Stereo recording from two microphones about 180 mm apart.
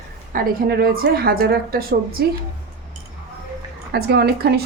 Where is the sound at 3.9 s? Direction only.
60° right (ahead or behind).